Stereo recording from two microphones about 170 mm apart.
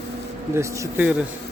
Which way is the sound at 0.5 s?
15° right (ahead or behind).